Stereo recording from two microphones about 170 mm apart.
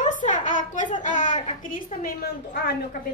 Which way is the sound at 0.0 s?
50° left (ahead or behind).